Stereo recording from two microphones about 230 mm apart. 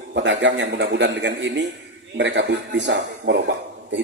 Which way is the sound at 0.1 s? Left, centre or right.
Right.